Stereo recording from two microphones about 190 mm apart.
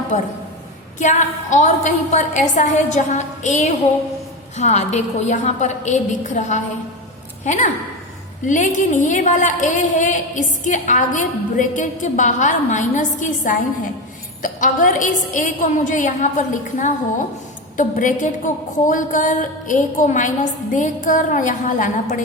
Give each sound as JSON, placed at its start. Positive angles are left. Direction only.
{"t": 0.1, "sound": "a woman's voice", "side_deg": 40}